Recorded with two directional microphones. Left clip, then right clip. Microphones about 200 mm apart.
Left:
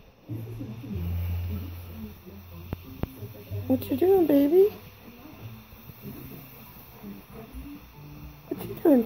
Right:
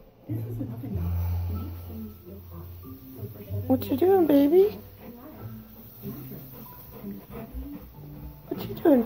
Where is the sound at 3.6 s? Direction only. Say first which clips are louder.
Right 1 dB; 15° left (ahead or behind).